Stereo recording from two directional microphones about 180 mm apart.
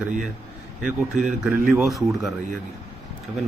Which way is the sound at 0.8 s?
5° right (ahead or behind).